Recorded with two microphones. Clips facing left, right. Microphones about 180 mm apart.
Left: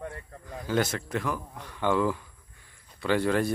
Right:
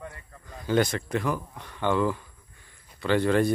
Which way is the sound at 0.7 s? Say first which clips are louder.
Right 3 dB; 5° left (ahead or behind).